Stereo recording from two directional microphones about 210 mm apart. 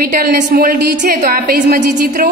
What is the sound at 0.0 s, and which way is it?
A woman's voice, 45° right (ahead or behind).